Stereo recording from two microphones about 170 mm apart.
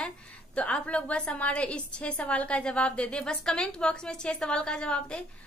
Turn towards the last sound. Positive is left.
turn(degrees=5)  # may be behind; listen again after turning